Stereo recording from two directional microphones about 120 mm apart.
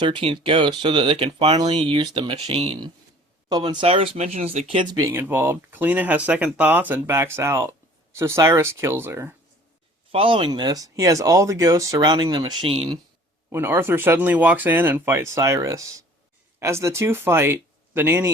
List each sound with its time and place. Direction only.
0.0 s speech: 45° right (ahead or behind)
1.5 s speech: 40° right (ahead or behind); by 2.7 s 60° right (ahead or behind)
3.7 s speech: 45° right (ahead or behind); by 4.6 s 60° right (ahead or behind)
4.9 s speech: 25° right (ahead or behind)
10.1 s speech: 50° right (ahead or behind)
12.6 s speech: 50° right (ahead or behind)
13.5 s speech: 20° right (ahead or behind)